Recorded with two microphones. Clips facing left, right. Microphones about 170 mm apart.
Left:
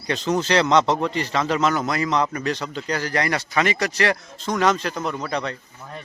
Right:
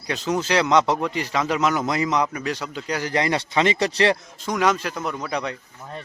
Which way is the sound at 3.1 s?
20° right (ahead or behind).